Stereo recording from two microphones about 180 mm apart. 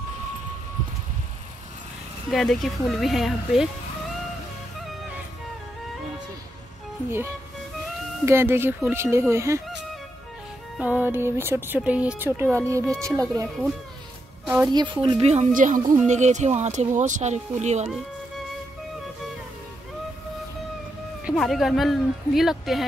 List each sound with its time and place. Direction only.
2.3 s speech: centre (ahead or behind)
7.1 s speech: 15° right (ahead or behind)
10.8 s speech: 10° right (ahead or behind)
14.6 s speech: 25° right (ahead or behind)
15.2 s speech: 40° right (ahead or behind)
21.2 s speech: 5° right (ahead or behind)